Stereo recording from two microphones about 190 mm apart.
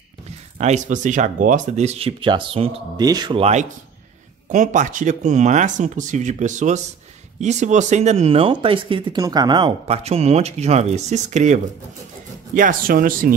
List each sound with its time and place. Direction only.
0.6 s speech: 40° right (ahead or behind)